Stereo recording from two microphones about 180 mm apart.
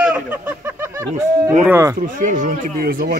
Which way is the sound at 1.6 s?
15° right (ahead or behind).